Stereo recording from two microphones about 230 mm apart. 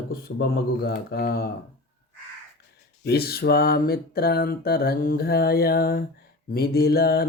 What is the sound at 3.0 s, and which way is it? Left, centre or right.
Mantra, left.